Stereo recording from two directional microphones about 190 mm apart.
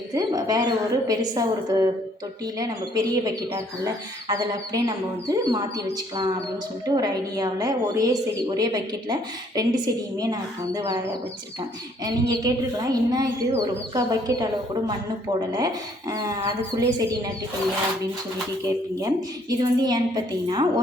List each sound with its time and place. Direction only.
0.1 s speech: 20° right (ahead or behind)
12.0 s speech: 20° right (ahead or behind)
18.9 s speech: 20° right (ahead or behind)